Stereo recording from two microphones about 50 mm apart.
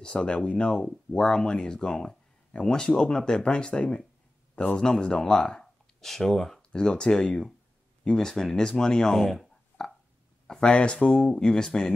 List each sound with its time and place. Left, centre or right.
0.0 s speech: centre
10.4 s speech: centre